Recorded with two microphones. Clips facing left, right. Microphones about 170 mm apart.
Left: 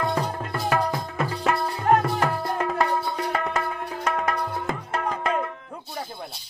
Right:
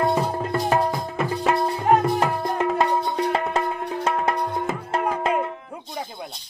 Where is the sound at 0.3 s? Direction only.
25° right (ahead or behind).